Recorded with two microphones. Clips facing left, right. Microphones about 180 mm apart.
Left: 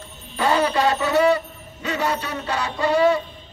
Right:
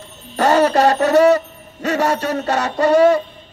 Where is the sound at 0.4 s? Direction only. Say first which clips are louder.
Right 6 dB; 45° right (ahead or behind).